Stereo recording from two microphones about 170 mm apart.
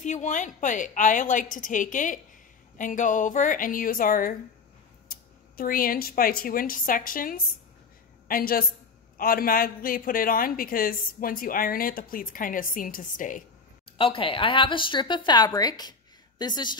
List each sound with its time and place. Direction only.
0.0 s a woman's voice: 45° left (ahead or behind)
13.9 s speech: 30° left (ahead or behind)